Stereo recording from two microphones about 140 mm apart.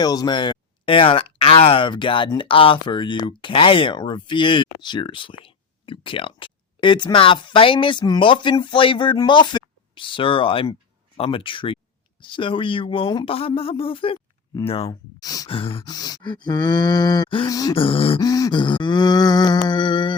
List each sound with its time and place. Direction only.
0.0 s speech: 30° left (ahead or behind); by 14.8 s 45° left (ahead or behind)
14.8 s speech: 25° left (ahead or behind)
15.4 s speech: 40° left (ahead or behind)
15.8 s speech: 30° left (ahead or behind)
17.5 s speech: 25° left (ahead or behind)
17.7 s speech: 40° left (ahead or behind)
18.2 s a sound: 25° left (ahead or behind)